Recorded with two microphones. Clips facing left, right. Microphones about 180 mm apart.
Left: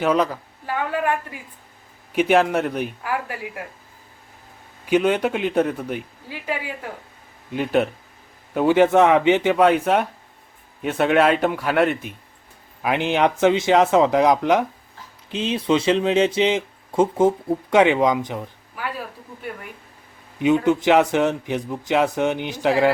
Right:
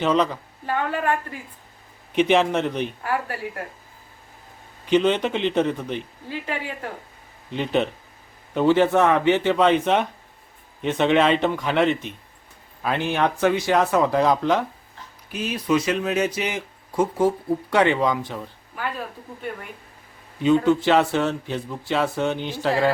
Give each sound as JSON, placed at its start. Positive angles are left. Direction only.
{"t": 0.0, "sound": "speech", "side_deg": 5}
{"t": 4.9, "sound": "speech", "side_deg": 10}
{"t": 12.8, "sound": "speech", "side_deg": 15}
{"t": 20.4, "sound": "speech", "side_deg": 15}